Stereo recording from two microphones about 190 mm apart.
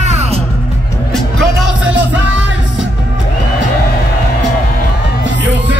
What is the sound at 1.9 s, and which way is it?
Music, 75° right (ahead or behind).